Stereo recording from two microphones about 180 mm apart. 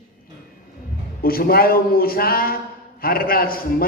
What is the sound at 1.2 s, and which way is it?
Speech, 55° left (ahead or behind).